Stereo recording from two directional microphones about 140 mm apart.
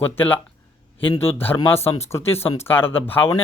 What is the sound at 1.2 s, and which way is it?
Speech, 15° left (ahead or behind).